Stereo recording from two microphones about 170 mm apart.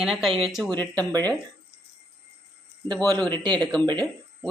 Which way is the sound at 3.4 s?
25° right (ahead or behind).